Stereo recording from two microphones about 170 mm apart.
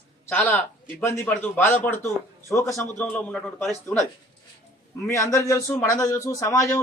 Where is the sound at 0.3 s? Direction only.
10° left (ahead or behind).